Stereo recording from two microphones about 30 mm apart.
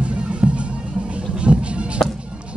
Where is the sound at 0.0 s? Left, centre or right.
Right.